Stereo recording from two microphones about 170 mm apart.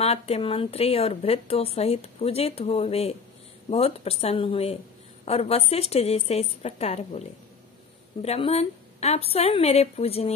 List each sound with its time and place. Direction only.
0.0 s speech: 35° left (ahead or behind)